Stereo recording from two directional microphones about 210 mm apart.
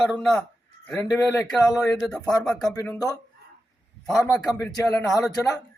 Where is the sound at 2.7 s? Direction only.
15° left (ahead or behind).